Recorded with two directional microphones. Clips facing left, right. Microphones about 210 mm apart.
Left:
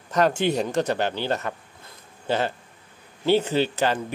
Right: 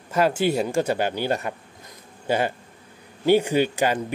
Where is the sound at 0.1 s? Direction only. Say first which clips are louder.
Even; 5° right (ahead or behind).